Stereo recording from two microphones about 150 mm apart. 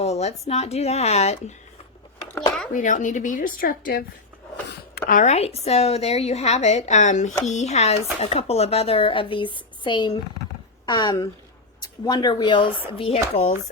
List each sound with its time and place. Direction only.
0.0 s a woman's voice: 45° left (ahead or behind)
2.7 s a woman's voice: 60° left (ahead or behind)
5.0 s a woman's voice: 65° left (ahead or behind)
5.3 s a woman's voice: 45° left (ahead or behind)